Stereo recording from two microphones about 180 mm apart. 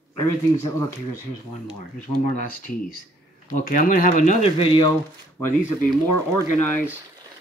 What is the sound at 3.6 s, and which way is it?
Speech, 50° left (ahead or behind).